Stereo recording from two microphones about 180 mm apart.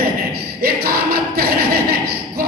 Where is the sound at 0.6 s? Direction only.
60° right (ahead or behind).